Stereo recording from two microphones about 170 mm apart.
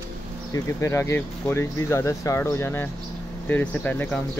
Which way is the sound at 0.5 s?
15° left (ahead or behind).